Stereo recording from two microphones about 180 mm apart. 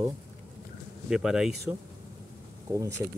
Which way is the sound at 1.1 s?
5° right (ahead or behind).